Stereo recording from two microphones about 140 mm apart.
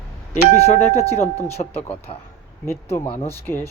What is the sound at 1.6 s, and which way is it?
Speech, 40° left (ahead or behind).